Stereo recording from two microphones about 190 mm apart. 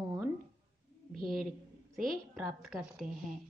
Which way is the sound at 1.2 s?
50° right (ahead or behind).